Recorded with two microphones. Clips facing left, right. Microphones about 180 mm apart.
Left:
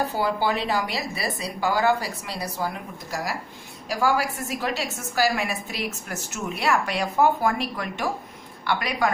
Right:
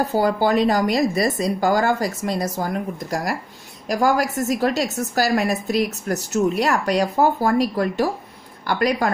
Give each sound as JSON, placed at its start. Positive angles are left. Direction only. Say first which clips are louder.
{"t": 0.1, "sound": "a woman's voice", "louder": "right 6 dB", "side_deg": -45}